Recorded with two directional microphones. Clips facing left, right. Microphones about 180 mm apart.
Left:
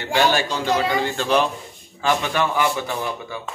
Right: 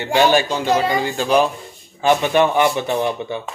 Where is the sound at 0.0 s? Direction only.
20° right (ahead or behind).